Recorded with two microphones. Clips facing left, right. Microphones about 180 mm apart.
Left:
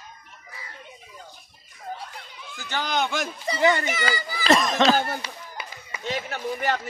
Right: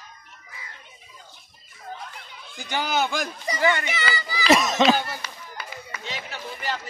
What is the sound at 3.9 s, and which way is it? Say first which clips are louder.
Speech: left 1 dB; 50° left (ahead or behind).